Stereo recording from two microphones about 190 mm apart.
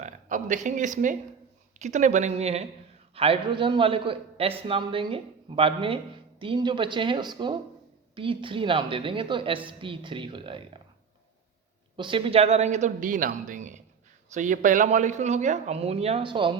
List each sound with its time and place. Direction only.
0.0 s a man's voice: 40° right (ahead or behind)
11.9 s speech: 25° right (ahead or behind)